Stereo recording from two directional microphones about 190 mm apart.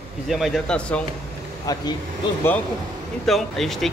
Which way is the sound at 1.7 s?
20° left (ahead or behind).